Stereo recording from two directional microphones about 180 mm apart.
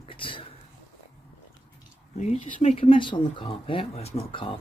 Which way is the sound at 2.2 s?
40° left (ahead or behind).